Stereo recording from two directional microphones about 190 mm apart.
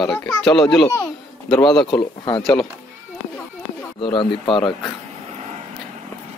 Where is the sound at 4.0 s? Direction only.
25° left (ahead or behind).